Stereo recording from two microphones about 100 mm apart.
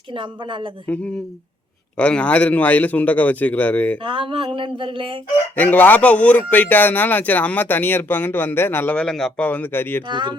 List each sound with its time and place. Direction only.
0.1 s a sound: 55° right (ahead or behind)
2.0 s a man's voice: 10° left (ahead or behind)
4.0 s a sound: 60° right (ahead or behind)
5.5 s a man's voice: 15° left (ahead or behind)
9.0 s a man's voice: 5° left (ahead or behind)
9.4 s a man's voice: 15° left (ahead or behind)
10.1 s speech: 50° right (ahead or behind)